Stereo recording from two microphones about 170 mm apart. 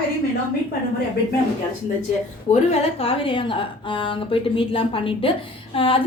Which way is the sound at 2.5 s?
40° left (ahead or behind).